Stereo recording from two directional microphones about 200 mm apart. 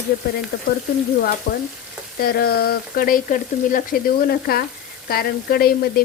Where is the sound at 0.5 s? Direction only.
45° left (ahead or behind).